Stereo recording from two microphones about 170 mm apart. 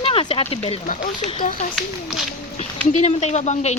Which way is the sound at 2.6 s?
40° left (ahead or behind).